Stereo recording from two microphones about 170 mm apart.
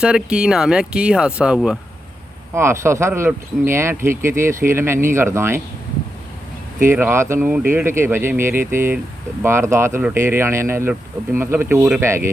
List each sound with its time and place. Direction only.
0.0 s speech: 5° right (ahead or behind)
2.6 s speech: 15° right (ahead or behind)
6.8 s speech: 15° right (ahead or behind)